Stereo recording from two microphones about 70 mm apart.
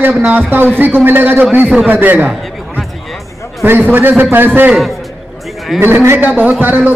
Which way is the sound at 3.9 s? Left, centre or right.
Right.